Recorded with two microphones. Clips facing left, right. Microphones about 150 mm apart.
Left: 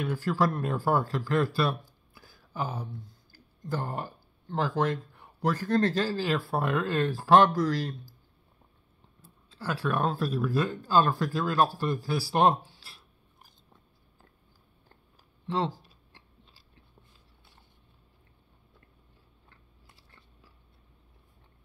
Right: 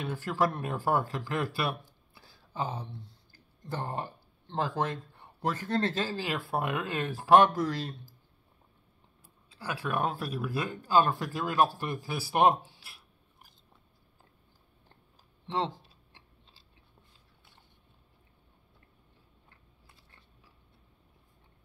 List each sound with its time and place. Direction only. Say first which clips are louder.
0.0 s speech: left 2 dB; 20° right (ahead or behind)
9.2 s speech: left 4 dB; 15° right (ahead or behind)
15.4 s a sound: left 2 dB; 25° right (ahead or behind)